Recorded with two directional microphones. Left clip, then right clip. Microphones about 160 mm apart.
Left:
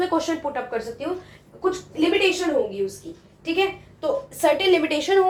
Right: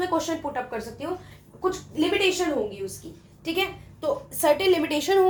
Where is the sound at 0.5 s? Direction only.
35° right (ahead or behind).